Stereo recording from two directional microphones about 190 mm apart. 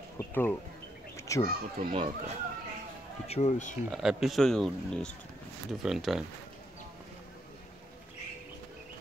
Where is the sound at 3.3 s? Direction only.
40° left (ahead or behind).